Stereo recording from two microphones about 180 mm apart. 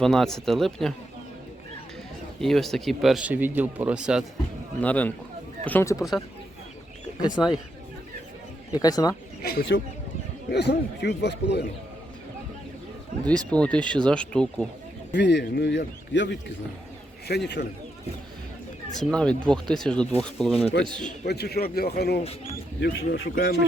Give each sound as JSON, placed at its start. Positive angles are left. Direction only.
{"t": 0.0, "sound": "speech", "side_deg": 0}
{"t": 2.4, "sound": "speech", "side_deg": 0}
{"t": 4.8, "sound": "speech", "side_deg": 10}
{"t": 7.2, "sound": "speech", "side_deg": 20}
{"t": 8.7, "sound": "speech", "side_deg": 20}
{"t": 9.4, "sound": "a man's voice", "side_deg": 60}
{"t": 13.1, "sound": "speech", "side_deg": -45}
{"t": 13.5, "sound": "speech", "side_deg": 5}
{"t": 15.1, "sound": "a man's voice", "side_deg": 75}
{"t": 17.2, "sound": "a man's voice", "side_deg": 65}
{"t": 18.9, "sound": "speech", "side_deg": 5}
{"t": 21.2, "sound": "a man's voice", "side_deg": 60}
{"t": 23.3, "sound": "speech", "side_deg": 50}